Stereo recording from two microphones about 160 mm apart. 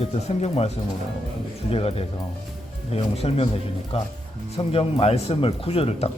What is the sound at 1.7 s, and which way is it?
Speech, 35° left (ahead or behind).